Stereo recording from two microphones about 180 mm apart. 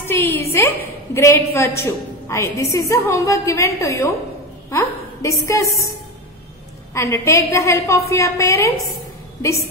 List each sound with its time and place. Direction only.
0.0 s a woman's voice: 10° left (ahead or behind)
6.9 s a woman's voice: 15° left (ahead or behind)